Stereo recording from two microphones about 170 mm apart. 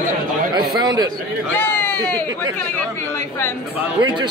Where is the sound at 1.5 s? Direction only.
10° left (ahead or behind).